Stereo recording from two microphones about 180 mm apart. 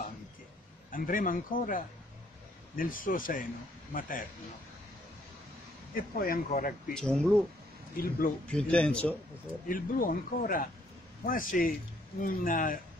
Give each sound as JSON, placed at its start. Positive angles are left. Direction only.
{"t": 0.9, "sound": "speech", "side_deg": 50}
{"t": 5.9, "sound": "speech", "side_deg": 55}
{"t": 6.9, "sound": "speech", "side_deg": 5}
{"t": 7.9, "sound": "speech", "side_deg": 55}
{"t": 8.5, "sound": "speech", "side_deg": 5}
{"t": 9.7, "sound": "speech", "side_deg": 50}